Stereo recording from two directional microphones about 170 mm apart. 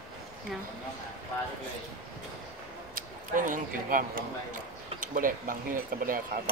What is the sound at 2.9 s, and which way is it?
Speech, 50° right (ahead or behind).